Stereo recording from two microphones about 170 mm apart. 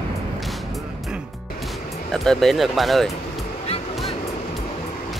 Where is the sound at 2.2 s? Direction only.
Centre (ahead or behind).